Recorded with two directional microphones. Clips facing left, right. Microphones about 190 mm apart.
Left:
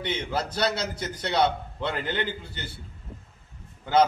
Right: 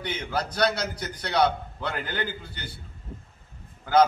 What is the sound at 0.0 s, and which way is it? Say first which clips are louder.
A man's voice: left 1 dB; 25° left (ahead or behind).